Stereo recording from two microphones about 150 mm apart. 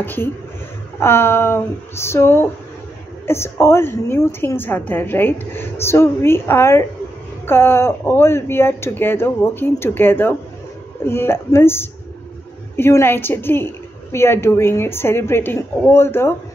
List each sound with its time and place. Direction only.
0.0 s a woman's voice: 15° left (ahead or behind)